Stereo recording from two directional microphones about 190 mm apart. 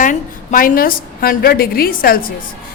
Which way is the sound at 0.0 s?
45° left (ahead or behind).